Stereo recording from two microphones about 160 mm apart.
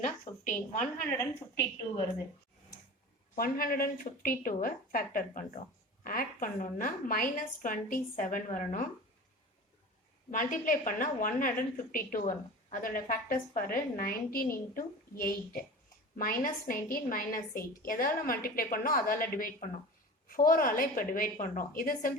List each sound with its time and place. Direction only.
0.0 s a sound: 50° left (ahead or behind)
3.3 s a woman's voice: 65° left (ahead or behind)
10.3 s a woman's voice: 55° left (ahead or behind)